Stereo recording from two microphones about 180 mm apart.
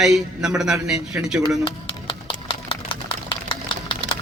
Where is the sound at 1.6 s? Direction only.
30° left (ahead or behind).